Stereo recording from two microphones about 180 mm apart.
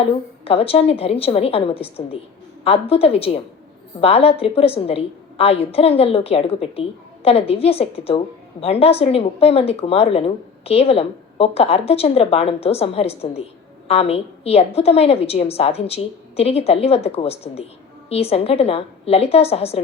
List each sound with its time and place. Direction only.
0.0 s speech: 35° left (ahead or behind)